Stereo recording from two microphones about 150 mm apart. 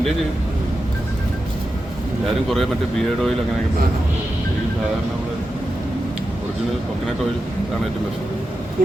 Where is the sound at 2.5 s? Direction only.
Centre (ahead or behind).